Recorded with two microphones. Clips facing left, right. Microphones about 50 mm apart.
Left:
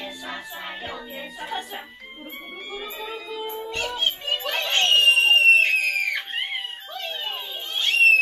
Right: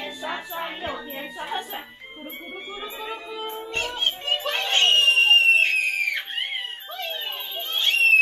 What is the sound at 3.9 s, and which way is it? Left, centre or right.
Children playing, right.